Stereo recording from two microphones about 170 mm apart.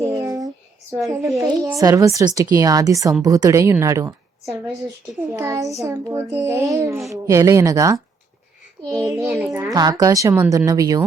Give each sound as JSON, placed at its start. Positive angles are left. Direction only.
{"t": 0.2, "sound": "a sound", "side_deg": -20}
{"t": 0.9, "sound": "child singing", "side_deg": -15}
{"t": 1.4, "sound": "speech", "side_deg": -20}
{"t": 5.3, "sound": "child singing", "side_deg": -15}
{"t": 7.1, "sound": "speech", "side_deg": -20}
{"t": 9.3, "sound": "child singing", "side_deg": -5}
{"t": 9.7, "sound": "speech", "side_deg": -20}